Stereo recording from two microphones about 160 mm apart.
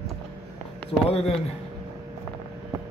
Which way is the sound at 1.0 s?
40° left (ahead or behind).